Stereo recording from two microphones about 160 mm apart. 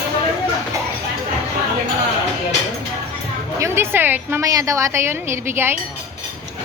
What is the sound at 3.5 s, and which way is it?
A woman's voice, 15° right (ahead or behind).